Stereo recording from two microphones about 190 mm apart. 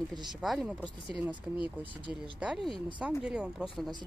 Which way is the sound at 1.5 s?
25° left (ahead or behind).